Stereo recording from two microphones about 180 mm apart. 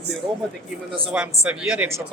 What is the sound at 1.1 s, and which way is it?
A man's voice, 10° right (ahead or behind).